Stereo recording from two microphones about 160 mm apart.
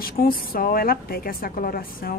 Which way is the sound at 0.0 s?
65° left (ahead or behind).